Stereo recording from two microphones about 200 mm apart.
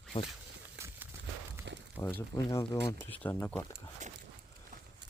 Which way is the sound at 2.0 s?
10° left (ahead or behind).